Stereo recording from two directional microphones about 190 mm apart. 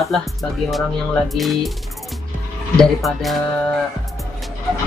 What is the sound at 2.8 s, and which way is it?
Speech, centre (ahead or behind).